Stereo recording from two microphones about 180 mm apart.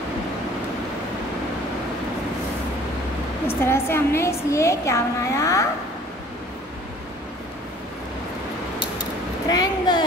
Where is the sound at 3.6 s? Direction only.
15° left (ahead or behind).